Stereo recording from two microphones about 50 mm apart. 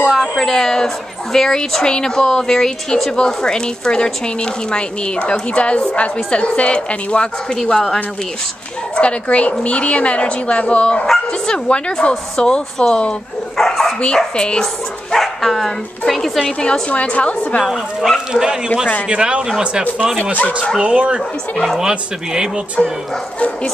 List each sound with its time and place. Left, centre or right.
0.4 s a woman's voice: centre
8.9 s a woman's voice: left; by 13.9 s centre
14.0 s a woman's voice: centre
15.1 s a woman's voice: centre; by 17.6 s left
17.6 s speech: centre
20.8 s speech: right
22.8 s a woman's voice: centre